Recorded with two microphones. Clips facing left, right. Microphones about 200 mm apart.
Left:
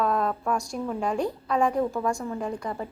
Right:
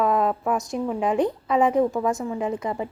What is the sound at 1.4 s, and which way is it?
Speech, 5° right (ahead or behind).